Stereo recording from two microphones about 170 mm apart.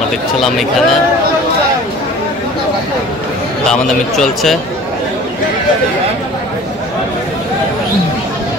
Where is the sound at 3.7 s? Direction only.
Centre (ahead or behind).